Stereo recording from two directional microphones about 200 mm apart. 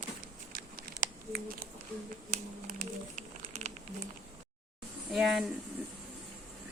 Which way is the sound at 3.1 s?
35° right (ahead or behind).